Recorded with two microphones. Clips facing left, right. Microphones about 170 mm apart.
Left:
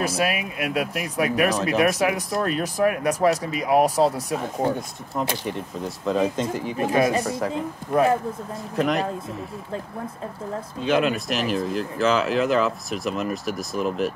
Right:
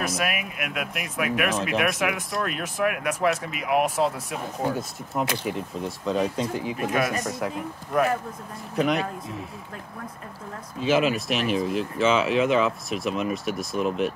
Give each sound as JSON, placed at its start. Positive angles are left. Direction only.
{"t": 0.0, "sound": "speech", "side_deg": 30}
{"t": 4.7, "sound": "speech", "side_deg": -5}
{"t": 6.8, "sound": "speech", "side_deg": 30}
{"t": 8.7, "sound": "speech", "side_deg": 0}
{"t": 10.8, "sound": "speech", "side_deg": 0}